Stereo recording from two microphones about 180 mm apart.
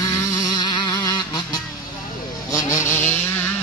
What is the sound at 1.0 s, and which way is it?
Music, 20° left (ahead or behind).